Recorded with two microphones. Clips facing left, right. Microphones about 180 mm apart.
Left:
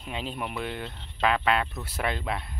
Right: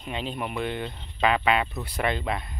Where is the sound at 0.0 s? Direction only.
5° left (ahead or behind).